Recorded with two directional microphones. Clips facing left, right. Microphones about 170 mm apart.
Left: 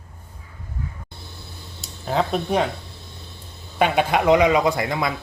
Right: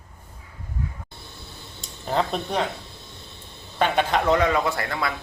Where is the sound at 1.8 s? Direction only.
5° left (ahead or behind).